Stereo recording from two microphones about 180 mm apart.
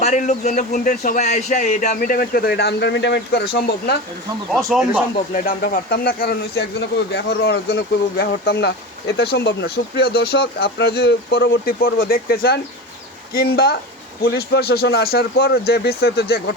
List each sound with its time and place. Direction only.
0.0 s a man's voice: 45° left (ahead or behind); by 3.9 s 65° left (ahead or behind)
4.5 s speech: 5° right (ahead or behind)
5.3 s speech: 50° left (ahead or behind)